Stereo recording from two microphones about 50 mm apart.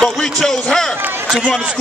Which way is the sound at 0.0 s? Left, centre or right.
Centre.